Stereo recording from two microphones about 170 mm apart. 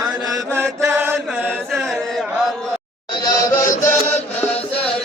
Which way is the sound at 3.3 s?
20° left (ahead or behind).